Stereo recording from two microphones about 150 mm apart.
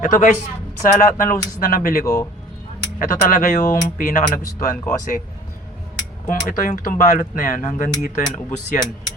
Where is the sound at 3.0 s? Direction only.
60° left (ahead or behind).